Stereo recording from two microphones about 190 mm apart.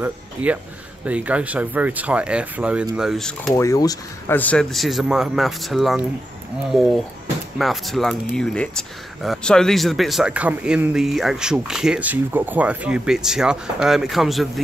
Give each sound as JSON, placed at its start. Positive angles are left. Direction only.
{"t": 0.0, "sound": "speech", "side_deg": -10}
{"t": 3.5, "sound": "speech", "side_deg": 15}
{"t": 4.4, "sound": "speech", "side_deg": 5}
{"t": 7.5, "sound": "speech", "side_deg": 0}